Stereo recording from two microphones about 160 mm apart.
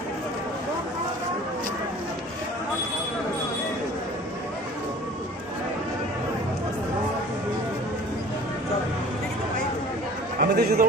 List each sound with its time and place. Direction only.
10.4 s a man's voice: 70° right (ahead or behind)